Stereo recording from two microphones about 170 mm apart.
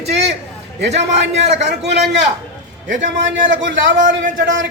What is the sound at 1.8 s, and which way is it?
Speech, 90° right.